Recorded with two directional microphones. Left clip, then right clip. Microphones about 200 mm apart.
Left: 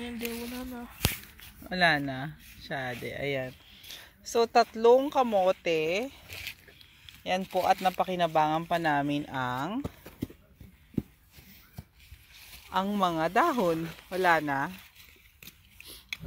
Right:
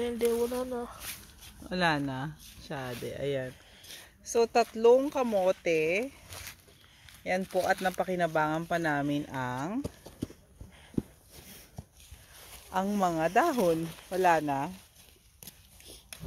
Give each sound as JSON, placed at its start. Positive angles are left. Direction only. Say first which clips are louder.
{"t": 0.0, "sound": "speech", "louder": "right 9 dB", "side_deg": -50}
{"t": 1.7, "sound": "speech", "louder": "left 3 dB", "side_deg": -25}
{"t": 2.9, "sound": "speech", "louder": "right 2 dB", "side_deg": -10}
{"t": 12.6, "sound": "speech", "louder": "left 1 dB", "side_deg": -5}